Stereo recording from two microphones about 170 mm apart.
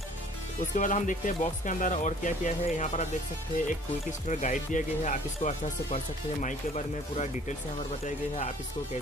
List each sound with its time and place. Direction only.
0.7 s speech: 50° left (ahead or behind)
4.3 s speech: 45° left (ahead or behind)